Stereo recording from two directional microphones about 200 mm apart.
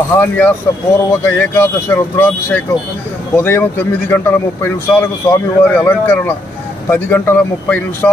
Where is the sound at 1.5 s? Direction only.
10° left (ahead or behind).